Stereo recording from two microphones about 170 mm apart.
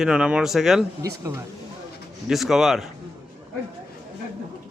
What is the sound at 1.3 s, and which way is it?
Speech, 15° right (ahead or behind).